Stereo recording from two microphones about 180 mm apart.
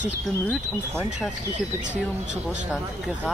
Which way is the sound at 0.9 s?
10° right (ahead or behind).